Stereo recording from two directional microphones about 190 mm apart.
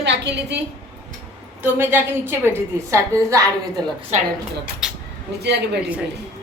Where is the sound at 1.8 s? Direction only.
10° right (ahead or behind).